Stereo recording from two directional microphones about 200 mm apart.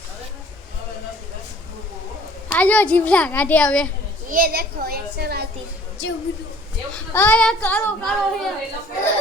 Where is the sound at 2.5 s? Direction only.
5° left (ahead or behind).